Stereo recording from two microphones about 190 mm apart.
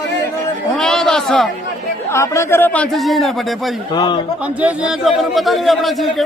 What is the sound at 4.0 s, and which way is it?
Speech, 25° left (ahead or behind).